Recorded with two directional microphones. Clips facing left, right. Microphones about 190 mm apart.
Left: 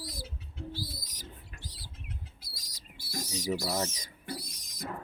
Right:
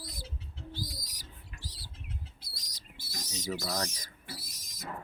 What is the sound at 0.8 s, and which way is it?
Bird, 15° right (ahead or behind).